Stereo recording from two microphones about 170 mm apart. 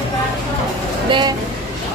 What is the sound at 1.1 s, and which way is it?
Vehicle, 25° right (ahead or behind).